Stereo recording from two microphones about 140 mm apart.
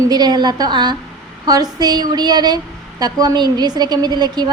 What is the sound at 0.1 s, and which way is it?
A woman's voice, 30° right (ahead or behind).